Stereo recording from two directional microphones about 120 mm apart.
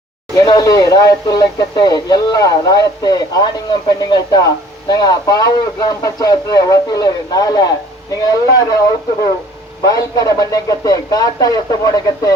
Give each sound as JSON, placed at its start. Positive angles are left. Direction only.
{"t": 0.3, "sound": "speech", "side_deg": 30}
{"t": 9.8, "sound": "a man's voice", "side_deg": 30}